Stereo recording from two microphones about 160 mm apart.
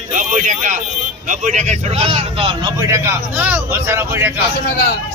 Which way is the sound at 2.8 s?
20° right (ahead or behind).